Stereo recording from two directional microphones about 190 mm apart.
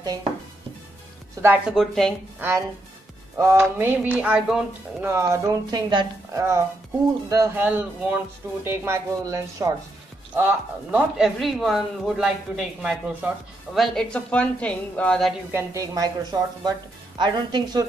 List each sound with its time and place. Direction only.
0.0 s speech: 20° right (ahead or behind)
1.4 s speech: 5° right (ahead or behind)
3.3 s speech: 15° right (ahead or behind)
5.1 s speech: 15° right (ahead or behind); by 15.3 s 5° left (ahead or behind)
15.5 s a woman's voice: 15° right (ahead or behind)